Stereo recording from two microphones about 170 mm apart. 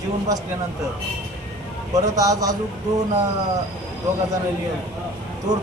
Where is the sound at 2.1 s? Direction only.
20° right (ahead or behind).